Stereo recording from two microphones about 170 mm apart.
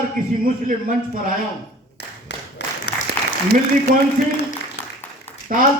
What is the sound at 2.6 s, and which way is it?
Applause, 85° left.